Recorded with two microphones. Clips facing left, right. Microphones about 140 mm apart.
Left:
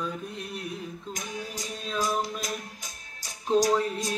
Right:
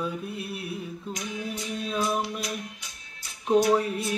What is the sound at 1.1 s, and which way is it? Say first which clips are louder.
Music: right 4 dB; 45° left (ahead or behind).